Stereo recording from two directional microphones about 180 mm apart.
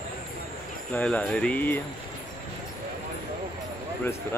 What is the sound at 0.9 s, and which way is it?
Speech, 10° left (ahead or behind).